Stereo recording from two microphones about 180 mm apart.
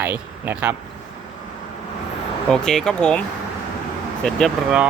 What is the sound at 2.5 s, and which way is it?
Speech, 5° left (ahead or behind).